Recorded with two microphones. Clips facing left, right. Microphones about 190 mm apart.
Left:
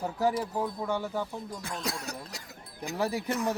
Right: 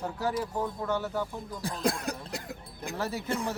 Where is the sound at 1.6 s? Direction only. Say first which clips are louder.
Right 2 dB; 35° right (ahead or behind).